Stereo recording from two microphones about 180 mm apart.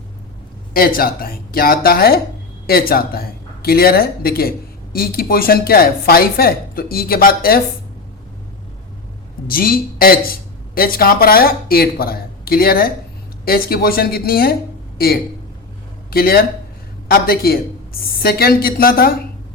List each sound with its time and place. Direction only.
0.7 s speech: 55° left (ahead or behind)
9.5 s speech: 55° left (ahead or behind)